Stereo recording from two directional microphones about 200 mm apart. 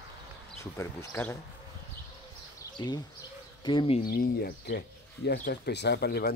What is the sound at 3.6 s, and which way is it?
Speech, 25° left (ahead or behind).